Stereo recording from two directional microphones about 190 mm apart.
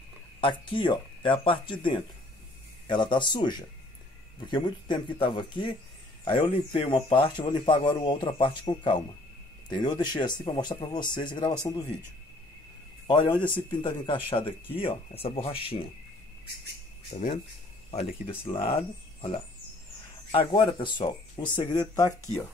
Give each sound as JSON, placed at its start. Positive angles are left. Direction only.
{"t": 0.4, "sound": "speech", "side_deg": 25}
{"t": 13.0, "sound": "speech", "side_deg": 25}
{"t": 18.2, "sound": "speech", "side_deg": 30}